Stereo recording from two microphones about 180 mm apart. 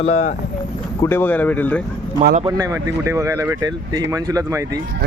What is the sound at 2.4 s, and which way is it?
Speech, 20° right (ahead or behind).